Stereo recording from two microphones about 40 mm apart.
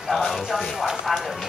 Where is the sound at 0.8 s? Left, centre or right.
Centre.